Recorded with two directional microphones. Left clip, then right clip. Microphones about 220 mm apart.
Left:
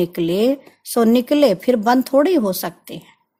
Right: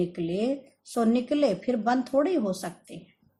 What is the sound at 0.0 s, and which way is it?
Speech, 50° left (ahead or behind).